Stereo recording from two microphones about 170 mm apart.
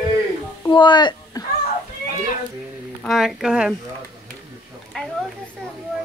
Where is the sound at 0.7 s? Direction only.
25° left (ahead or behind).